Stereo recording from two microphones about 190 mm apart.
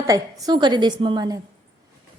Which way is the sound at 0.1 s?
20° right (ahead or behind).